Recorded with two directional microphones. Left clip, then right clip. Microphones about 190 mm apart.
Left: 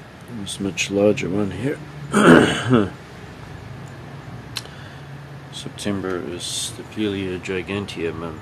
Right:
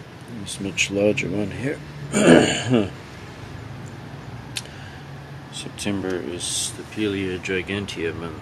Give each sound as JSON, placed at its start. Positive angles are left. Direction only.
{"t": 0.5, "sound": "speech", "side_deg": 20}
{"t": 5.6, "sound": "speech", "side_deg": 15}